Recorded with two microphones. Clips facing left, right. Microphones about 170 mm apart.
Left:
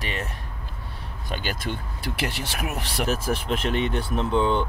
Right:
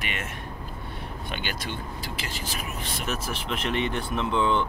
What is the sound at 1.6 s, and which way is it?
Speech, 65° left (ahead or behind).